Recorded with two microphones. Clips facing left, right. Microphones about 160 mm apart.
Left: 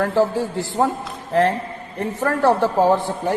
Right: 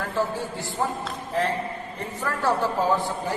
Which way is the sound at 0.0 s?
85° left.